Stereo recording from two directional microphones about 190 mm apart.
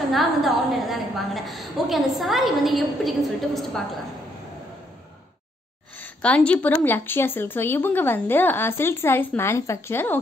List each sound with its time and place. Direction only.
0.1 s a woman's voice: centre (ahead or behind)
5.9 s a woman's voice: 10° left (ahead or behind)